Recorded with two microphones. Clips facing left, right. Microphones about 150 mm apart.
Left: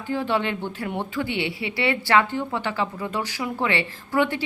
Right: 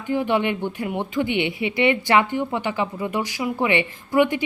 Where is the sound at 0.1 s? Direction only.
15° right (ahead or behind).